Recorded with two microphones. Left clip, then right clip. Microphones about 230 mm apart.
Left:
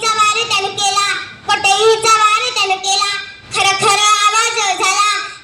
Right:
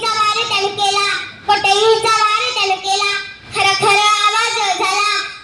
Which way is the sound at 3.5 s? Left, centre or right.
Left.